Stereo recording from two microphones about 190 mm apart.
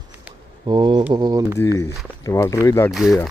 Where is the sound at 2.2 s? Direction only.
15° left (ahead or behind).